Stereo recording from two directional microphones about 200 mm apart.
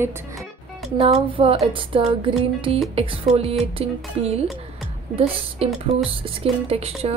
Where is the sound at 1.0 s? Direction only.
30° right (ahead or behind).